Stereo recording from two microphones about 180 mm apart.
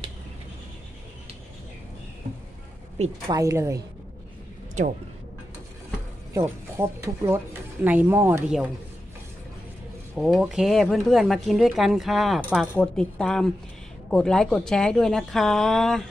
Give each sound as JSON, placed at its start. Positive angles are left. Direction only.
{"t": 3.3, "sound": "a woman's voice", "side_deg": -20}
{"t": 6.3, "sound": "speech", "side_deg": -15}
{"t": 10.1, "sound": "speech", "side_deg": 0}